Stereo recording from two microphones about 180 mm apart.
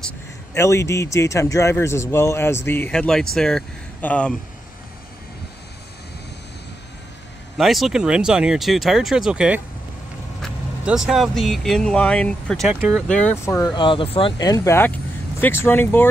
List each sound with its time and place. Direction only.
0.6 s speech: 15° left (ahead or behind)
7.5 s speech: centre (ahead or behind)
13.7 s speech: 25° left (ahead or behind); by 16.1 s 10° left (ahead or behind)